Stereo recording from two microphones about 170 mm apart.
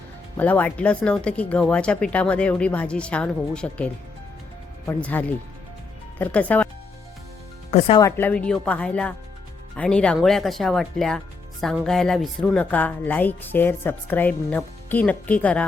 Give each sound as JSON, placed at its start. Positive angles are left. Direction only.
{"t": 0.3, "sound": "speech", "side_deg": 10}
{"t": 7.7, "sound": "speech", "side_deg": 35}
{"t": 8.0, "sound": "speech", "side_deg": 10}